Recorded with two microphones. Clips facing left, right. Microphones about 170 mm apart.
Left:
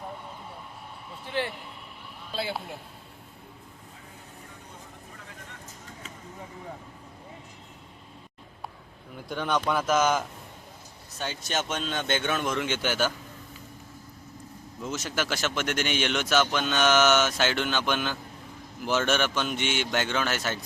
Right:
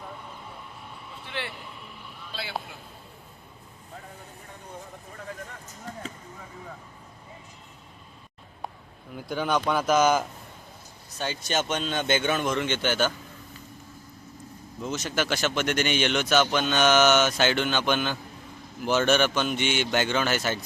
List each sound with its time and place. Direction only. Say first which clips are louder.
2.3 s a man's voice: left 3 dB; 45° left (ahead or behind)
9.1 s speech: right 2 dB; centre (ahead or behind)
14.8 s speech: right 2 dB; 5° left (ahead or behind)